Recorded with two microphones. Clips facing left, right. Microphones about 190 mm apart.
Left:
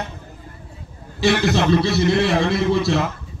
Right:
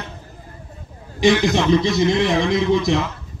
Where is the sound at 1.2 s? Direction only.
15° right (ahead or behind).